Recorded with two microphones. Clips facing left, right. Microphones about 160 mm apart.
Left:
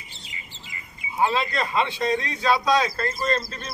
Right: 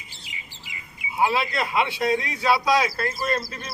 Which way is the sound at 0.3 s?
90° right.